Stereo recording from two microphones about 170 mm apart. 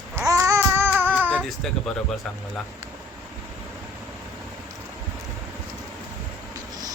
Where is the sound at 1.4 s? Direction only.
Centre (ahead or behind).